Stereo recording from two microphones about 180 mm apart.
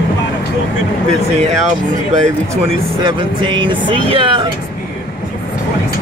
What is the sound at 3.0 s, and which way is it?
Speech, 25° right (ahead or behind).